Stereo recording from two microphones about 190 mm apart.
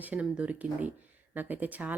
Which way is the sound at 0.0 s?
5° right (ahead or behind).